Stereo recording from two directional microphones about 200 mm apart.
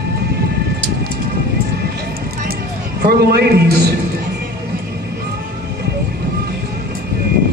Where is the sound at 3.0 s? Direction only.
55° right (ahead or behind).